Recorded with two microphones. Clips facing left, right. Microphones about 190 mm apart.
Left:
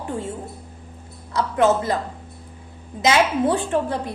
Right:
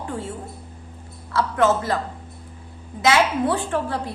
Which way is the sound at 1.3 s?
20° left (ahead or behind).